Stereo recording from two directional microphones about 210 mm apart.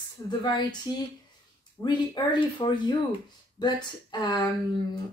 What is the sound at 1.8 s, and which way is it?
Speech, 20° left (ahead or behind).